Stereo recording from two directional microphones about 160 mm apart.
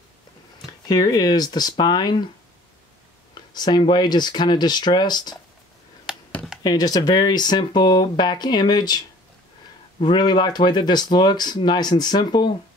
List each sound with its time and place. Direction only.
0.8 s speech: 25° left (ahead or behind)
3.5 s speech: 25° left (ahead or behind)
6.3 s computer keyboard: centre (ahead or behind)
6.6 s speech: 25° left (ahead or behind)